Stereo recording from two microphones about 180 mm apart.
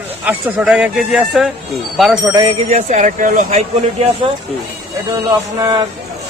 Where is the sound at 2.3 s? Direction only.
20° right (ahead or behind).